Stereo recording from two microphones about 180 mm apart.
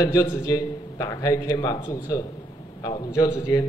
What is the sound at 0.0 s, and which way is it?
A man's voice, 20° left (ahead or behind).